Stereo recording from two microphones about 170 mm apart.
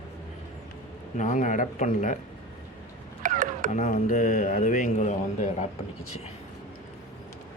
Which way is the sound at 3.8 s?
45° left (ahead or behind).